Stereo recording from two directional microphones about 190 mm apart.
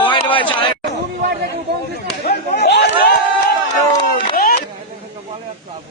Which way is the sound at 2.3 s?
60° left (ahead or behind).